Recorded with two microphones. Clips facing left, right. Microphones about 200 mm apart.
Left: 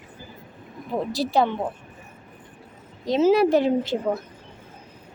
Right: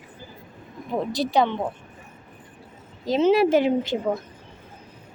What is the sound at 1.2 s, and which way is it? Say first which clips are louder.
Speech: even; 5° left (ahead or behind).